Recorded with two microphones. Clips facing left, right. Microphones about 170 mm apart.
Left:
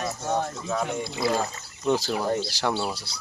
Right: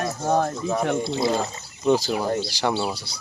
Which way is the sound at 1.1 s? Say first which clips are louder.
Right 4 dB; 25° right (ahead or behind).